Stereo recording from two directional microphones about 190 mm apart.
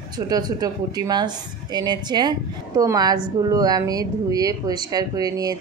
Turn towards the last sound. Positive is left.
turn(degrees=-20)  # may be behind; listen again after turning